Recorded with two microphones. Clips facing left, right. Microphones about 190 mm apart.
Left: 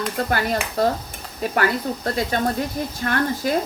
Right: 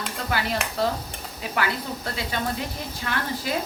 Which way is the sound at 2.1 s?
45° left (ahead or behind).